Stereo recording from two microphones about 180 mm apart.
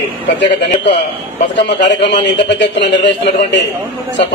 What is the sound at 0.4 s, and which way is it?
A man's voice, 75° left (ahead or behind).